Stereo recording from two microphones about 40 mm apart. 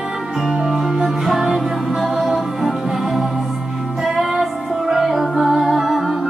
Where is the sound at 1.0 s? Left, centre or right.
Centre.